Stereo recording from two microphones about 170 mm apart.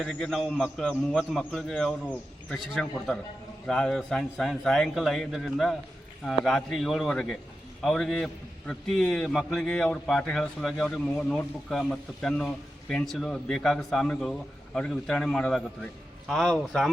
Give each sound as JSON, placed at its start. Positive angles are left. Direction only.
{"t": 0.0, "sound": "a man's voice", "side_deg": 0}